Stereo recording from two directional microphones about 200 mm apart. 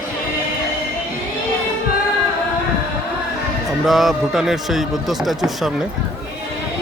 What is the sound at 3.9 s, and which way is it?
A man's voice, centre (ahead or behind).